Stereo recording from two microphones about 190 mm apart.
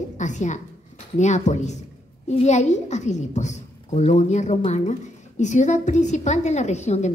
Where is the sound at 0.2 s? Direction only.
40° left (ahead or behind).